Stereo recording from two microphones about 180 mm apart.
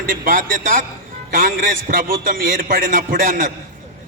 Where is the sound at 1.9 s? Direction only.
50° right (ahead or behind).